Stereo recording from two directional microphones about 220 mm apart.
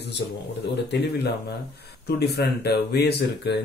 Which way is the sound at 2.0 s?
45° left (ahead or behind).